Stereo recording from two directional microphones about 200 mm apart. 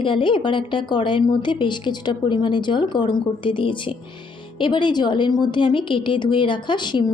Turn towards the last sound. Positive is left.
turn(degrees=25)  # may be behind; listen again after turning